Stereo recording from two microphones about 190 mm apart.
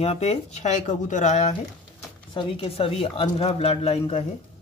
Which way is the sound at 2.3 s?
25° left (ahead or behind).